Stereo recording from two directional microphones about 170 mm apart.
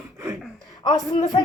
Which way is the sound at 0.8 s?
25° left (ahead or behind).